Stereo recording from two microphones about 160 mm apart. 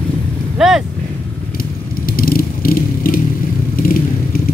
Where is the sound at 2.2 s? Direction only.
65° left (ahead or behind).